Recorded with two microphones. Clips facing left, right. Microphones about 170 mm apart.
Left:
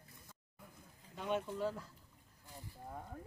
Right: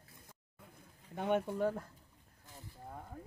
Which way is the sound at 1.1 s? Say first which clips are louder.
Right 5 dB; 60° right (ahead or behind).